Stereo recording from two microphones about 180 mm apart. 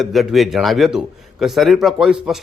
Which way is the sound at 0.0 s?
Centre (ahead or behind).